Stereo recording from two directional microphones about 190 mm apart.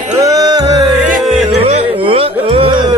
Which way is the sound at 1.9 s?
30° right (ahead or behind).